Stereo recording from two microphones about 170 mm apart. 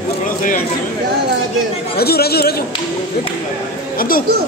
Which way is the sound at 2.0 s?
65° left (ahead or behind).